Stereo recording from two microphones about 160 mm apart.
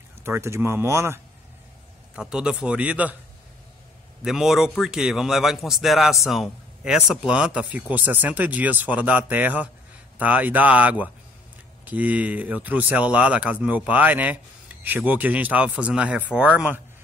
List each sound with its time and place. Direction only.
0.2 s speech: 15° right (ahead or behind)
2.1 s speech: 5° right (ahead or behind)
4.2 s a man's voice: 5° right (ahead or behind)